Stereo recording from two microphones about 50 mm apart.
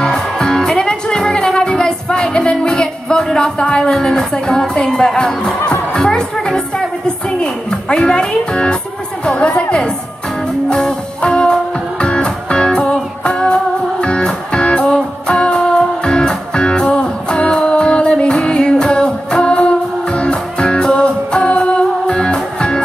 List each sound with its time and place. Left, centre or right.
0.0 s music: centre
5.7 s speech: centre
10.7 s music: centre